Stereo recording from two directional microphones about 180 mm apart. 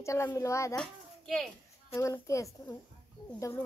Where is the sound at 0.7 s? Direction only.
5° left (ahead or behind).